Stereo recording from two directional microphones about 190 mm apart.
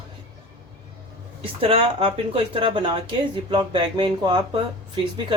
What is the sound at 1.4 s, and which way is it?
Speech, 30° right (ahead or behind).